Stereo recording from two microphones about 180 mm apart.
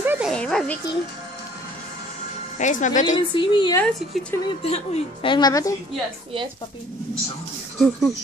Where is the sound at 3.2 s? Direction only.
25° left (ahead or behind).